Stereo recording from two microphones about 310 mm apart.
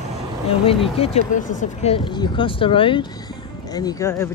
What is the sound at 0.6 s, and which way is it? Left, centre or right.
Speech, centre.